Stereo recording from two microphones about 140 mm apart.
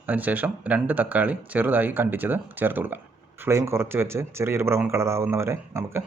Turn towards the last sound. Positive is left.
turn(degrees=-20)  # may be behind; listen again after turning